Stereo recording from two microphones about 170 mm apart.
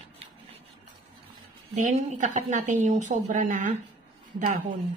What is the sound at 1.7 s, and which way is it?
A woman's voice, 45° right (ahead or behind).